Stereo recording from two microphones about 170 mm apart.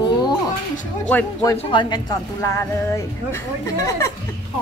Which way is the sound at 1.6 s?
30° left (ahead or behind).